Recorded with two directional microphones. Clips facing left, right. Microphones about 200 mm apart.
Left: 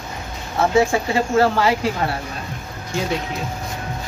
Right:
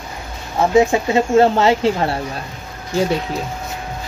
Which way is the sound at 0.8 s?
20° right (ahead or behind).